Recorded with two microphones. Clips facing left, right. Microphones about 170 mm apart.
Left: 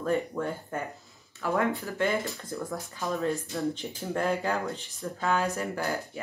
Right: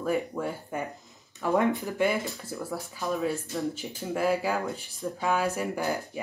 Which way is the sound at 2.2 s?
5° right (ahead or behind).